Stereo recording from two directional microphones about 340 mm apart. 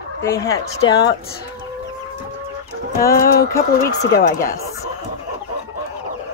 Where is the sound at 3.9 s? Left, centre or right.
Left.